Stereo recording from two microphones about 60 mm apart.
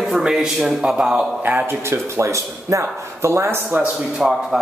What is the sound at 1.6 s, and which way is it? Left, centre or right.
Speech, right.